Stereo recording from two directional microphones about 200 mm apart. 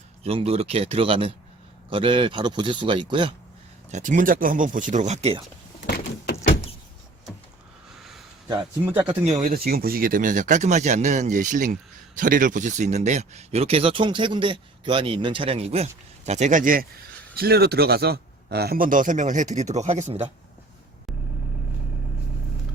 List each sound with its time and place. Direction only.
0.2 s speech: 30° right (ahead or behind)
3.9 s speech: 40° right (ahead or behind)
5.8 s door: 55° left (ahead or behind)
8.5 s speech: 10° right (ahead or behind)
9.0 s speech: 25° right (ahead or behind)
9.4 s speech: 45° right (ahead or behind)